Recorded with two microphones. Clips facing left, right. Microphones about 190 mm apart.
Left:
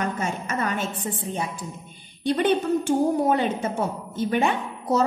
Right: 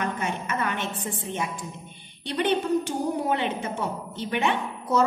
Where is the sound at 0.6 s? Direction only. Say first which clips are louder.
Left 2 dB; 40° left (ahead or behind).